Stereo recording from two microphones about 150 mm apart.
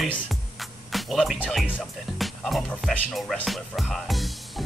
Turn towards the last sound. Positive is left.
turn(degrees=0)  # may be behind; listen again after turning